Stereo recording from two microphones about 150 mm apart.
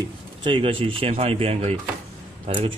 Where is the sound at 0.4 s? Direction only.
35° right (ahead or behind).